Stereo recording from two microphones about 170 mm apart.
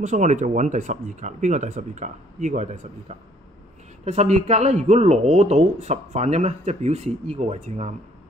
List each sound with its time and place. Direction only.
0.0 s speech: 45° right (ahead or behind)